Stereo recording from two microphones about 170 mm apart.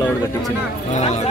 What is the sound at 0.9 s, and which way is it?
Speech, 45° left (ahead or behind).